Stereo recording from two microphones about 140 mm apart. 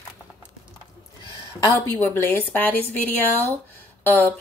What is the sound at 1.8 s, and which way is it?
A woman's voice, 20° left (ahead or behind).